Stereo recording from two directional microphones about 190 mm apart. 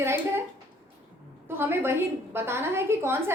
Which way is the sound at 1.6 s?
10° right (ahead or behind).